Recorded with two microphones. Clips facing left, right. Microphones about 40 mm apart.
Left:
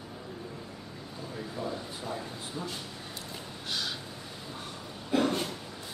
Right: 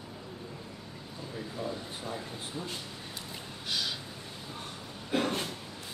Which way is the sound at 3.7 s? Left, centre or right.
Centre.